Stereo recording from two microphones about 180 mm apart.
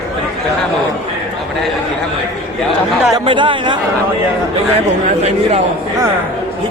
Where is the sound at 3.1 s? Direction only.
25° right (ahead or behind).